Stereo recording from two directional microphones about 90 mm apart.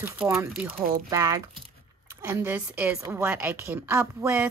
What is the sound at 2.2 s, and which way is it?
A woman's voice, 25° right (ahead or behind).